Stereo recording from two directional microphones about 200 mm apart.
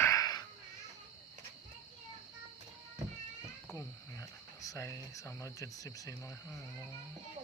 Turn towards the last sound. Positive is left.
turn(degrees=15)  # may be behind; listen again after turning